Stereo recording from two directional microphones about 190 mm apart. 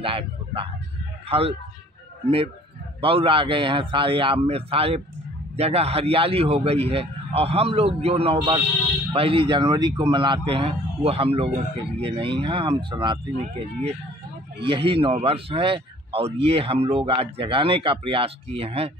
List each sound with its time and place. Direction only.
0.0 s a man's voice: 30° right (ahead or behind)